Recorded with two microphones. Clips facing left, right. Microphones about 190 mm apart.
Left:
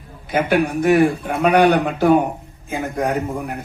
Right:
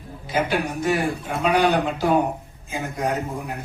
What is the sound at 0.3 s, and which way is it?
Speech, 55° left (ahead or behind).